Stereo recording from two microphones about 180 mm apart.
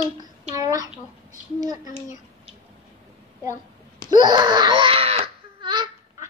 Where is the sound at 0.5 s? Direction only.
20° right (ahead or behind).